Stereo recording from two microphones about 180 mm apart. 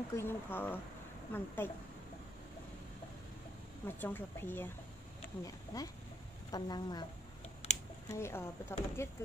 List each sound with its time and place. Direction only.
0.1 s speech: 15° left (ahead or behind)
3.8 s speech: 10° left (ahead or behind)
5.7 s a woman's voice: 20° left (ahead or behind)
7.6 s computer keyboard: 35° left (ahead or behind)
8.1 s speech: 15° left (ahead or behind)